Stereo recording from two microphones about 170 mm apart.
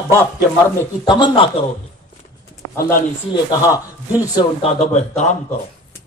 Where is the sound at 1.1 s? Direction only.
25° left (ahead or behind).